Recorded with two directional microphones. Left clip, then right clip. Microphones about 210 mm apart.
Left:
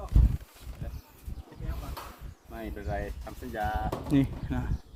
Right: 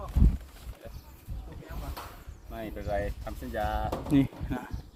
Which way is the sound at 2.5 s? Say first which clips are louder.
Right 3 dB; 35° right (ahead or behind).